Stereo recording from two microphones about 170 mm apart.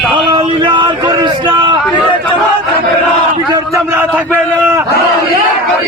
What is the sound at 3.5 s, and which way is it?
A man's voice, 15° right (ahead or behind).